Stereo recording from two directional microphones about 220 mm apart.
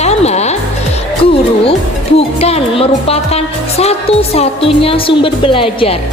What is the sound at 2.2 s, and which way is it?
Speech, 25° left (ahead or behind).